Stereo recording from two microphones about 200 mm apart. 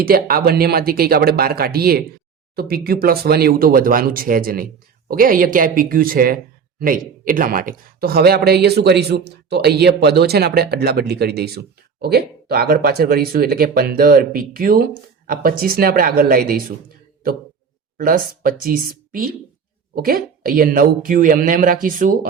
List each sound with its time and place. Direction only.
0.0 s speech: 50° right (ahead or behind)
17.9 s speech: 45° right (ahead or behind)